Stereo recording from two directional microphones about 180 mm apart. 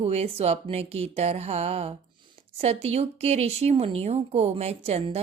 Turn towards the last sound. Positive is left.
turn(degrees=-35)  # may be behind; listen again after turning